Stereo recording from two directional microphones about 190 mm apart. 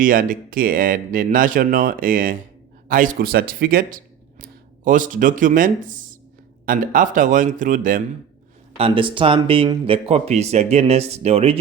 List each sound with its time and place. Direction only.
0.0 s speech: 45° right (ahead or behind)
8.8 s speech: 25° right (ahead or behind)